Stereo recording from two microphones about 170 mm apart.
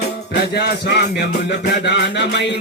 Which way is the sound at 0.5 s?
70° left (ahead or behind).